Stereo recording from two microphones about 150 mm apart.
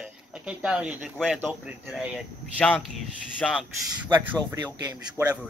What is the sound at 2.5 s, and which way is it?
Speech, 10° left (ahead or behind).